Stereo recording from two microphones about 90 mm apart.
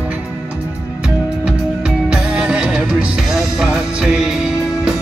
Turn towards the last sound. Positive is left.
turn(degrees=-5)  # may be behind; listen again after turning